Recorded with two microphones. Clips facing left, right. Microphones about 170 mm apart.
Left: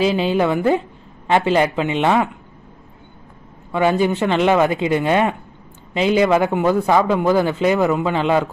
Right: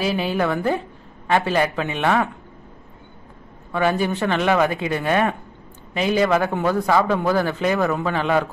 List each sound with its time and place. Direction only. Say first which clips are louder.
0.0 s a woman's voice: left 4 dB; 20° left (ahead or behind)
3.7 s a woman's voice: left 4 dB; 20° left (ahead or behind)